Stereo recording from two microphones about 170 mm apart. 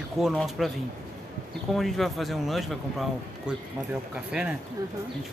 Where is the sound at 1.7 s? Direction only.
Centre (ahead or behind).